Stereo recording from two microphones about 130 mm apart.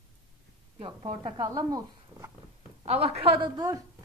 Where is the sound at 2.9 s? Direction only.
50° right (ahead or behind).